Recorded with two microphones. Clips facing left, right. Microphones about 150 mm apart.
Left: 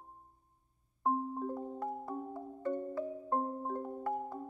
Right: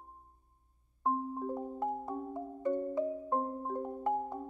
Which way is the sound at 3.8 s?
20° right (ahead or behind).